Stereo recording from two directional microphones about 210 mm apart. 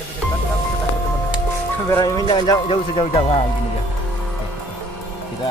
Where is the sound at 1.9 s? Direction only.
15° left (ahead or behind).